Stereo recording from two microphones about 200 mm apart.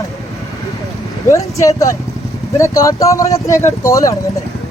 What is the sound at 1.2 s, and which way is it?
Speech, 15° left (ahead or behind).